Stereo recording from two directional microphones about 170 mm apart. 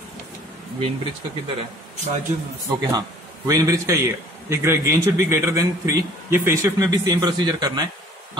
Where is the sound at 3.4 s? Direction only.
20° right (ahead or behind).